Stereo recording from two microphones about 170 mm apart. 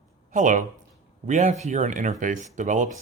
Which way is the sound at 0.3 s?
50° right (ahead or behind).